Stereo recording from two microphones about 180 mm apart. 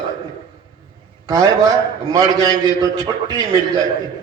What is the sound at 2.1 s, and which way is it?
A man's voice, 20° right (ahead or behind).